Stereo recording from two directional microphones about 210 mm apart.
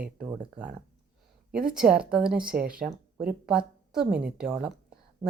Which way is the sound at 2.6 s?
45° right (ahead or behind).